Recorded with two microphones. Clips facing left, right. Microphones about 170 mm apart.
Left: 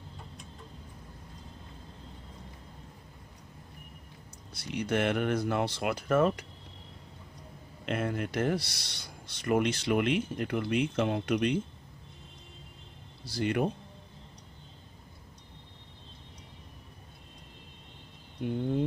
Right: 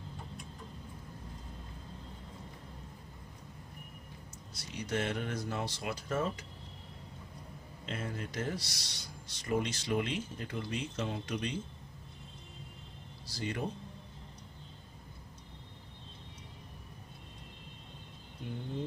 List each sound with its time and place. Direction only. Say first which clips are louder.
4.6 s speech: left 6 dB; 60° left (ahead or behind)
7.8 s speech: left 8 dB; 65° left (ahead or behind)
13.2 s speech: left 8 dB; 65° left (ahead or behind)